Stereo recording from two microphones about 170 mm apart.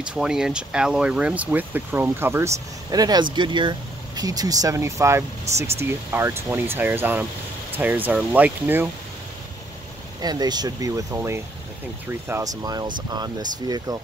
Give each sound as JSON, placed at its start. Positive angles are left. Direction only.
{"t": 0.0, "sound": "speech", "side_deg": -5}
{"t": 10.2, "sound": "speech", "side_deg": -25}